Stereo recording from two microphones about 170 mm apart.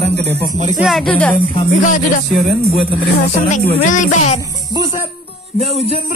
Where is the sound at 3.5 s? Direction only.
50° left (ahead or behind).